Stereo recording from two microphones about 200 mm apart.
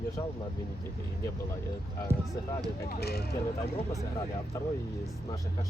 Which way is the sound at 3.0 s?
50° left (ahead or behind).